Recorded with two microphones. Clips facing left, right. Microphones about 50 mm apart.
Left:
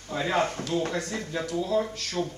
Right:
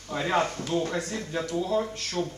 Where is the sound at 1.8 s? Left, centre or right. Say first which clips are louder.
Left 1 dB; centre.